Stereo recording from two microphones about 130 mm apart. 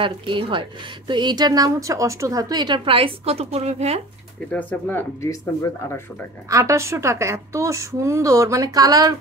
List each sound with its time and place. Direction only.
0.0 s a woman's voice: 40° right (ahead or behind)
4.5 s speech: 10° left (ahead or behind)
6.5 s a woman's voice: 25° right (ahead or behind)